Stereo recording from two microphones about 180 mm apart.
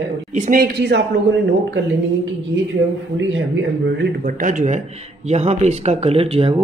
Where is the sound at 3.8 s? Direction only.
70° right (ahead or behind).